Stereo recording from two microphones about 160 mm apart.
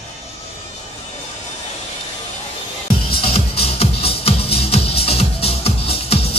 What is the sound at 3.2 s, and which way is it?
Music, 35° left (ahead or behind).